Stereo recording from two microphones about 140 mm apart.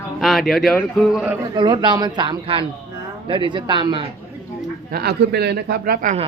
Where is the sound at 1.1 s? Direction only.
10° right (ahead or behind).